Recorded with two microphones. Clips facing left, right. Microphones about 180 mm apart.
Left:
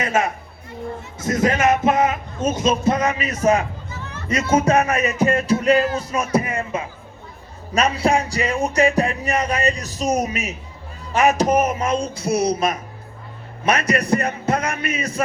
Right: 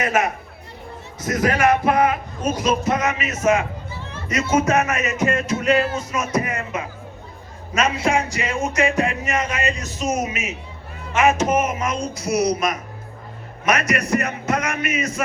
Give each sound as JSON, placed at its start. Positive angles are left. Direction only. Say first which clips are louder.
{"t": 0.0, "sound": "speech", "louder": "even", "side_deg": 25}
{"t": 4.5, "sound": "music", "louder": "left 2 dB", "side_deg": 30}